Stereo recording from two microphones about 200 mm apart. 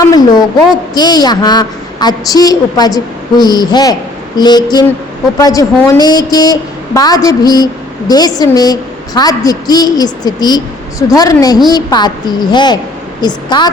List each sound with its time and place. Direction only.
0.0 s a woman's voice: 20° left (ahead or behind)